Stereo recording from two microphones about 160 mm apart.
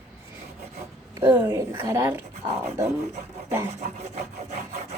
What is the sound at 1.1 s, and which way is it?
A woman's voice, 20° right (ahead or behind).